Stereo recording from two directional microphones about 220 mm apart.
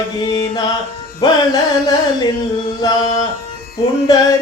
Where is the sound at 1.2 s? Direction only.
15° left (ahead or behind).